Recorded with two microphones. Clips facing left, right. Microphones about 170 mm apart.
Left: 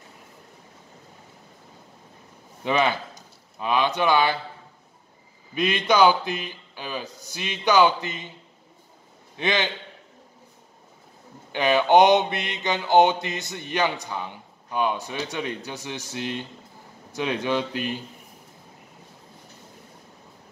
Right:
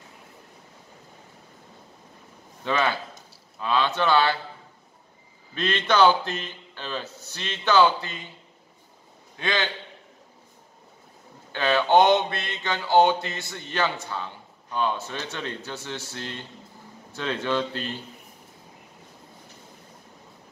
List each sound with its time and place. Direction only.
2.6 s mantra: 15° left (ahead or behind)
5.5 s mantra: 10° left (ahead or behind)
9.4 s a man's voice: 20° left (ahead or behind)
11.5 s mantra: 15° left (ahead or behind)